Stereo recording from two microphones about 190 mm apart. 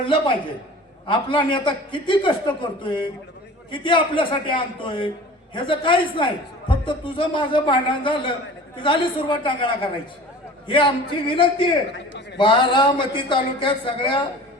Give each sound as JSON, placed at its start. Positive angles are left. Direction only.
{"t": 0.0, "sound": "a man's voice", "side_deg": 25}